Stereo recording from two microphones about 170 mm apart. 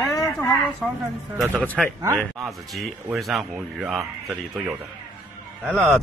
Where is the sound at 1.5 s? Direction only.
5° left (ahead or behind).